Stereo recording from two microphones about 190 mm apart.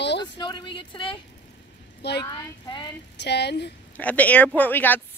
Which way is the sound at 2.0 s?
60° left (ahead or behind).